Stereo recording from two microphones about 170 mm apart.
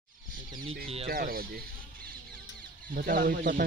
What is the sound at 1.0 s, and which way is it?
Speech, 60° right (ahead or behind).